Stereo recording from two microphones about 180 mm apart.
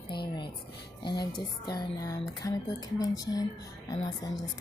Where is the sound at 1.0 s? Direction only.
25° left (ahead or behind).